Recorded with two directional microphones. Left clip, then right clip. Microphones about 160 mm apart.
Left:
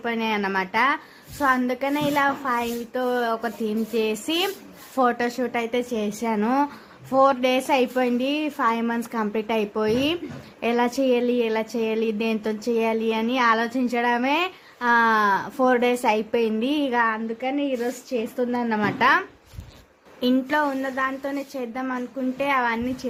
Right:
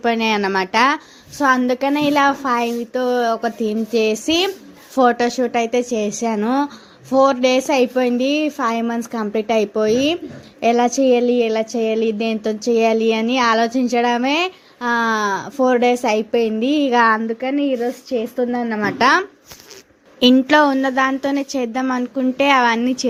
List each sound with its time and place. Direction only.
0.0 s a woman's voice: 40° right (ahead or behind); by 16.9 s 20° right (ahead or behind)
16.9 s a woman's voice: 45° right (ahead or behind)
17.7 s a woman's voice: 25° right (ahead or behind)
18.9 s a woman's voice: 35° right (ahead or behind)
20.5 s a woman's voice: 45° right (ahead or behind)